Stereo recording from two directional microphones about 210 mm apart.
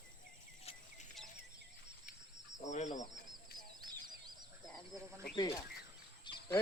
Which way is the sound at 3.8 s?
20° right (ahead or behind).